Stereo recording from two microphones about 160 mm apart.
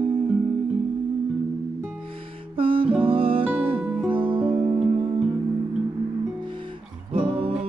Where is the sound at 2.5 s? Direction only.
35° right (ahead or behind).